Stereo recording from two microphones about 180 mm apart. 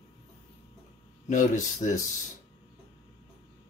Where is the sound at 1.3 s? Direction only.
45° left (ahead or behind).